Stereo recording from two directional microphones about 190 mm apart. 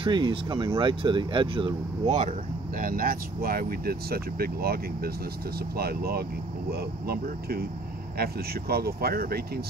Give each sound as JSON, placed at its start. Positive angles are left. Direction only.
{"t": 0.0, "sound": "speech", "side_deg": -25}
{"t": 2.0, "sound": "speech", "side_deg": -40}